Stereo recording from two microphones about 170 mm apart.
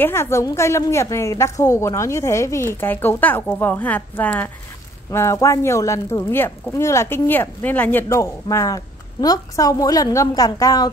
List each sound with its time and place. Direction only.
0.0 s speech: 15° left (ahead or behind)